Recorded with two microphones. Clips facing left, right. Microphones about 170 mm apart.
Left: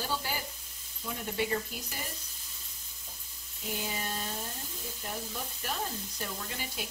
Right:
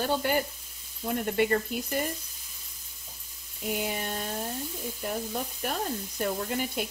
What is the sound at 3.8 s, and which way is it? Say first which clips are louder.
Speech: right 3 dB; 55° right (ahead or behind).